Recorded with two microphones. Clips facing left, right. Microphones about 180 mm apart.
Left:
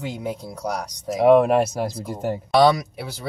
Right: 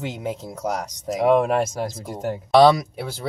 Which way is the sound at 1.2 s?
Centre (ahead or behind).